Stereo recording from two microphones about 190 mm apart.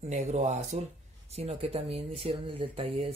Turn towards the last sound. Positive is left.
turn(degrees=-30)  # may be behind; listen again after turning